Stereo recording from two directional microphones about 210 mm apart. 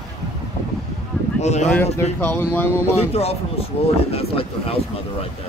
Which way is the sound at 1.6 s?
5° left (ahead or behind).